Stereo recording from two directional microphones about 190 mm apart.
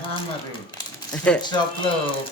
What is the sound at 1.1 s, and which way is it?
Speech, 5° left (ahead or behind).